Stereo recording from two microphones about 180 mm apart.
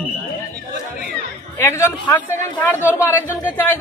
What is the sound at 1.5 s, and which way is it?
Speech, 15° left (ahead or behind).